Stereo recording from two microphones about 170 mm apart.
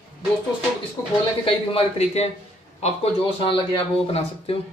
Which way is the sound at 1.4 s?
30° left (ahead or behind).